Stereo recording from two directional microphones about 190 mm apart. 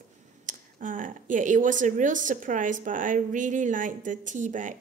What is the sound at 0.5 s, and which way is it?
Speech, 45° right (ahead or behind).